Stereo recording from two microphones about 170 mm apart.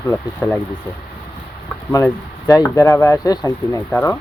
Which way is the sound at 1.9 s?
20° left (ahead or behind).